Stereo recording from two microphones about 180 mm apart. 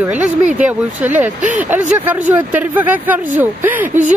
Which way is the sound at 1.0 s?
10° right (ahead or behind).